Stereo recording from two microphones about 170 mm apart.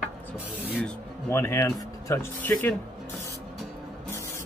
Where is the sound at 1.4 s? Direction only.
15° left (ahead or behind).